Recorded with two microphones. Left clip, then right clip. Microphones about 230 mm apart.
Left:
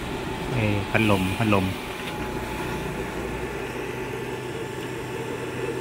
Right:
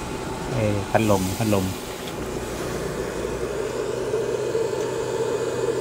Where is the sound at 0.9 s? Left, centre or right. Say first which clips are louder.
Right 2 dB; centre.